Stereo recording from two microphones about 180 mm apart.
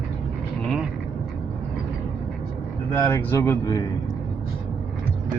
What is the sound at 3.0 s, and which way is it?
Speech, 15° left (ahead or behind).